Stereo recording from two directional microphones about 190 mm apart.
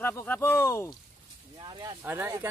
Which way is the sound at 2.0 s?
15° right (ahead or behind).